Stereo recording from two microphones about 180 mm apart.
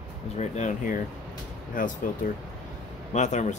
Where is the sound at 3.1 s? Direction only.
40° left (ahead or behind).